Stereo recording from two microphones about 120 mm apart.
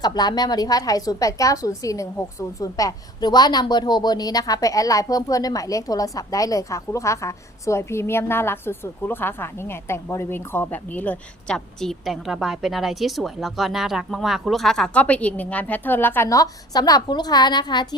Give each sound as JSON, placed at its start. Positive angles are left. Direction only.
{"t": 0.0, "sound": "a woman's voice", "side_deg": 35}